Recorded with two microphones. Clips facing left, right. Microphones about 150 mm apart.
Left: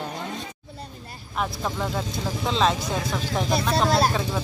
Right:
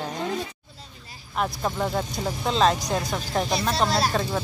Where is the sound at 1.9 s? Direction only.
15° right (ahead or behind).